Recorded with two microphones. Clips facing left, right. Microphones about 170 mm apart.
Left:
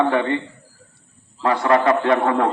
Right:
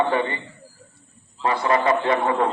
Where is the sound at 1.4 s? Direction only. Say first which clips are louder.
Left 3 dB; 65° left (ahead or behind).